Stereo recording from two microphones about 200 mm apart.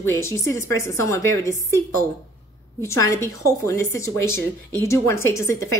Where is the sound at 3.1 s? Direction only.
15° left (ahead or behind).